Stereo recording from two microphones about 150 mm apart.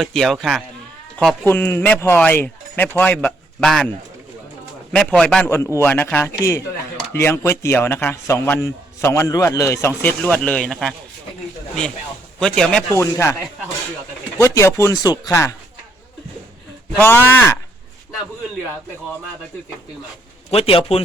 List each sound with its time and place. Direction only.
0.0 s speech: centre (ahead or behind)
1.5 s speech: 15° left (ahead or behind)
4.9 s speech: 5° left (ahead or behind)
12.4 s speech: 5° left (ahead or behind)
12.9 s speech: 20° left (ahead or behind)
14.3 s speech: 20° left (ahead or behind)
17.0 s speech: 15° left (ahead or behind)
20.5 s a man's voice: 40° left (ahead or behind)